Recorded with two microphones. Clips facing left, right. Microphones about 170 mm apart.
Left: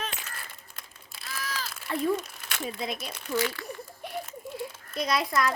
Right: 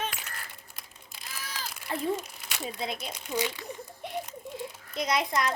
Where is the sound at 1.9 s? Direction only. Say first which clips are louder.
Left 3 dB; 25° right (ahead or behind).